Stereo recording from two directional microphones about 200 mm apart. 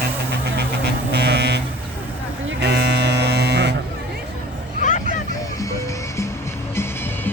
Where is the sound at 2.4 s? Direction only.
55° right (ahead or behind).